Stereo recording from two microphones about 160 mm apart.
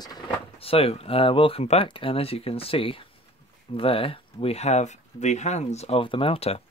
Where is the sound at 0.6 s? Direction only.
35° left (ahead or behind).